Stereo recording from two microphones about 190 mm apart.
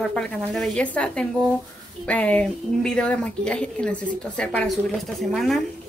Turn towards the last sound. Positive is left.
turn(degrees=0)  # may be behind; listen again after turning